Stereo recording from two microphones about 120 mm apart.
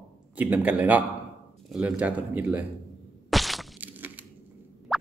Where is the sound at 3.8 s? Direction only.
15° right (ahead or behind).